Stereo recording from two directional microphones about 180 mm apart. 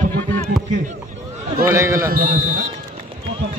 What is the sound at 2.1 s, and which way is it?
Speech, 50° right (ahead or behind).